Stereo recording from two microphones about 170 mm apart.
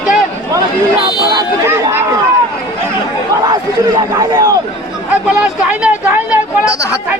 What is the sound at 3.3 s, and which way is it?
A man's voice, 20° right (ahead or behind).